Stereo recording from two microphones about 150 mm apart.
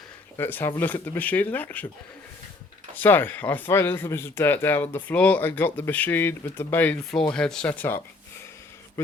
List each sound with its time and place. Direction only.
0.3 s speech: 15° left (ahead or behind)
2.9 s speech: 15° left (ahead or behind)